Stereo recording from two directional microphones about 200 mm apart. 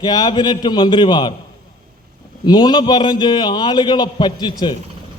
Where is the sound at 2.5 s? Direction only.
20° left (ahead or behind).